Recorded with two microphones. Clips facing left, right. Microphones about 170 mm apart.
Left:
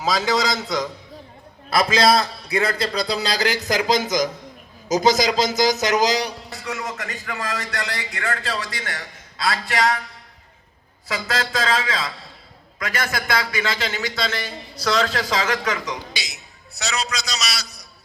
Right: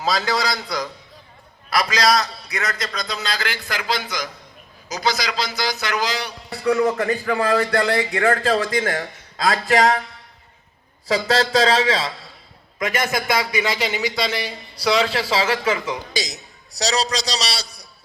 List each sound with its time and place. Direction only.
0.4 s a man's voice: 20° left (ahead or behind); by 6.3 s 40° left (ahead or behind)
6.7 s speech: 55° right (ahead or behind)
7.4 s a man's voice: 35° right (ahead or behind)
7.7 s a man's voice: 55° right (ahead or behind)
11.1 s a man's voice: 35° right (ahead or behind)
12.8 s a man's voice: 20° right (ahead or behind)
16.1 s a man's voice: 40° right (ahead or behind)